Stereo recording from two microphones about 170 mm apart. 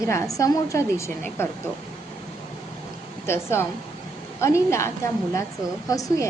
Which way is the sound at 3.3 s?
15° left (ahead or behind).